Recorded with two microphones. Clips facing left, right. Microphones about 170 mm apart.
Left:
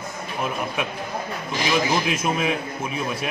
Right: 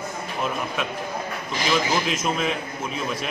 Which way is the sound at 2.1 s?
10° left (ahead or behind).